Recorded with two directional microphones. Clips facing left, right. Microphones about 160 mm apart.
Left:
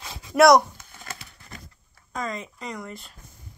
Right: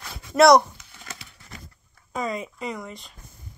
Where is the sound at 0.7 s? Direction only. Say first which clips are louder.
Left 2 dB; 50° left (ahead or behind).